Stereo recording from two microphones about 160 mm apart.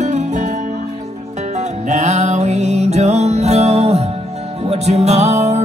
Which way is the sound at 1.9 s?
45° right (ahead or behind).